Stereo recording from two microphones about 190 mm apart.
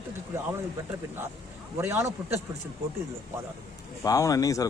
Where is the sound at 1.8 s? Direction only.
15° right (ahead or behind).